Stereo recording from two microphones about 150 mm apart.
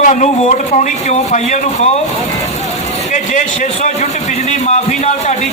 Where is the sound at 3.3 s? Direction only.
55° left (ahead or behind).